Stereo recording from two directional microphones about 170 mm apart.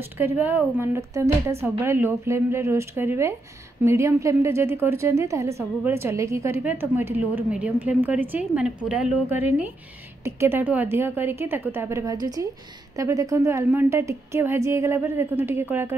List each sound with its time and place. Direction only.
0.2 s a woman's voice: 10° right (ahead or behind)